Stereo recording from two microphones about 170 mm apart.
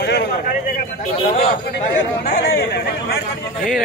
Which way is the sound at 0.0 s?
70° left (ahead or behind).